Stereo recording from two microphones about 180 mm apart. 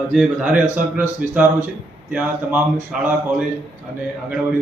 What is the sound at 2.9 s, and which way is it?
Mantra, centre (ahead or behind).